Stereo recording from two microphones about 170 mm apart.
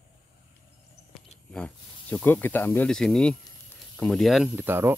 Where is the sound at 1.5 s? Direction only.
5° left (ahead or behind).